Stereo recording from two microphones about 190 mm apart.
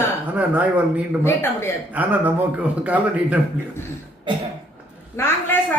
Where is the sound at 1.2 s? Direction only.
15° left (ahead or behind).